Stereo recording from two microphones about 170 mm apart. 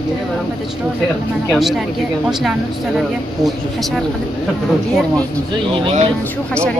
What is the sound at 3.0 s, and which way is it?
A woman's voice, centre (ahead or behind).